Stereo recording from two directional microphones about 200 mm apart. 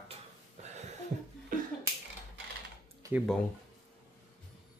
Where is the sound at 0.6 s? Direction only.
35° right (ahead or behind).